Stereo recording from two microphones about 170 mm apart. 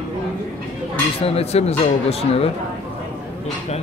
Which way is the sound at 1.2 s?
35° left (ahead or behind).